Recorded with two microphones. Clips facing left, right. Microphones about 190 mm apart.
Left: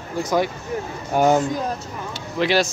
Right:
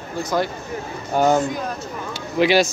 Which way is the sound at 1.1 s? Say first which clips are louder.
Even; 10° left (ahead or behind).